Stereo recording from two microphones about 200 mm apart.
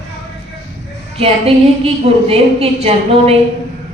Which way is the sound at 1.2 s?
30° right (ahead or behind).